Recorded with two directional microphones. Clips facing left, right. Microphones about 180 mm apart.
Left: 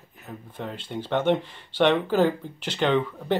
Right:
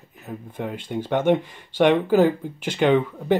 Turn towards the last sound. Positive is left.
turn(degrees=-10)  # may be behind; listen again after turning